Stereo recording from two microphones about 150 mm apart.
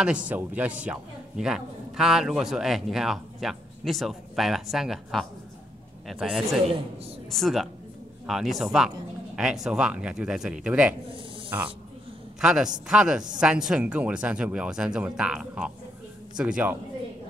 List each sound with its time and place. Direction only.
0.3 s a man's voice: 10° right (ahead or behind)
12.4 s a man's voice: 5° right (ahead or behind)